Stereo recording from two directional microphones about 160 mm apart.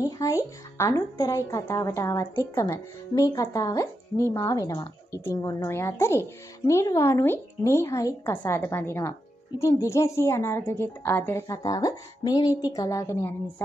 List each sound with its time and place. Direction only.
0.0 s a woman's voice: 20° left (ahead or behind)